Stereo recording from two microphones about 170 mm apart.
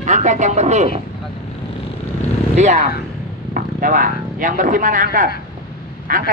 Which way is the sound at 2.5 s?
45° right (ahead or behind).